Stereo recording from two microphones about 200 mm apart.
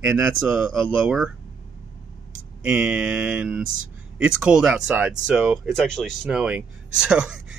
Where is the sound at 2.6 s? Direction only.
5° right (ahead or behind).